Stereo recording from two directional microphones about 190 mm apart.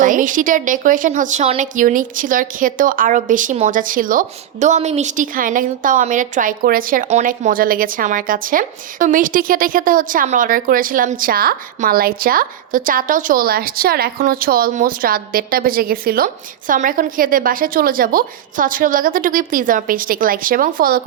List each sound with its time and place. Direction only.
0.0 s a woman's voice: 45° right (ahead or behind)